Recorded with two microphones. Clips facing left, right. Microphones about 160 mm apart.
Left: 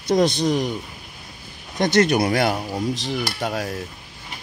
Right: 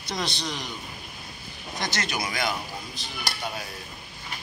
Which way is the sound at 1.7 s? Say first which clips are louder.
Left 13 dB; 55° left (ahead or behind).